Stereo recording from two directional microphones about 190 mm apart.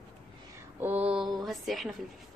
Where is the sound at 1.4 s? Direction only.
Centre (ahead or behind).